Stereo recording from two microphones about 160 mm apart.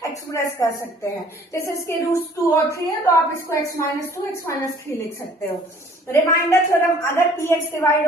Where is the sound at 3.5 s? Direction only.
20° left (ahead or behind).